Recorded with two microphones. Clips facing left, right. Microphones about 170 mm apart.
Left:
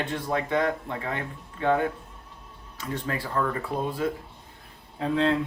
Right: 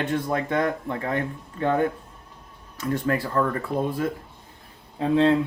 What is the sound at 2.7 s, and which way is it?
Speech, 45° right (ahead or behind).